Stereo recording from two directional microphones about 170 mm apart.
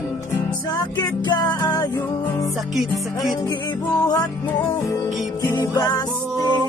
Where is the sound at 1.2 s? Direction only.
25° left (ahead or behind).